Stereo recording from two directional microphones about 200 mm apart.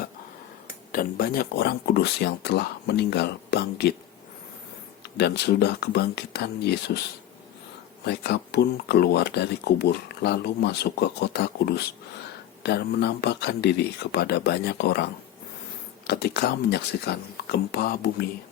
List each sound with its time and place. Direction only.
0.9 s speech: 45° left (ahead or behind)
5.1 s speech: 55° left (ahead or behind)
8.0 s speech: 55° left (ahead or behind)